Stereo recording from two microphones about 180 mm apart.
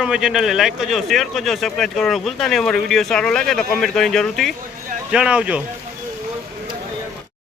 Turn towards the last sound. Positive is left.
turn(degrees=-5)  # may be behind; listen again after turning